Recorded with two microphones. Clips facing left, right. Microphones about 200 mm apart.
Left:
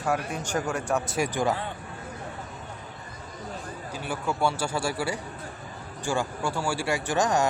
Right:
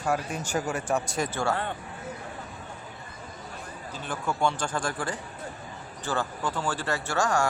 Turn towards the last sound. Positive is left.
turn(degrees=20)  # may be behind; listen again after turning